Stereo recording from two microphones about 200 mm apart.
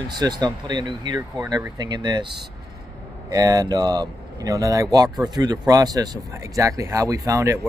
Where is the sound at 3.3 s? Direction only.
20° right (ahead or behind).